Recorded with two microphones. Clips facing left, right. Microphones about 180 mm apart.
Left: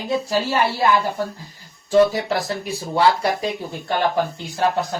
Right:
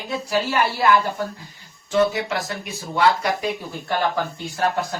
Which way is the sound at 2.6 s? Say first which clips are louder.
Left 1 dB; 30° left (ahead or behind).